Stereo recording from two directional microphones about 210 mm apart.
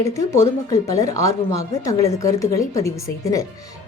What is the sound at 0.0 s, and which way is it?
Speech, 15° left (ahead or behind).